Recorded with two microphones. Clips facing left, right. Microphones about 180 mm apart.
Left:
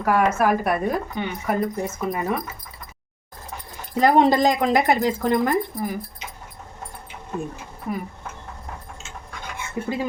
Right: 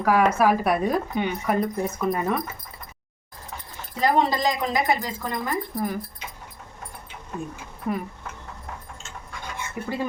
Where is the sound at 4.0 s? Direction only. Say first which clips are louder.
Left 5 dB; 55° left (ahead or behind).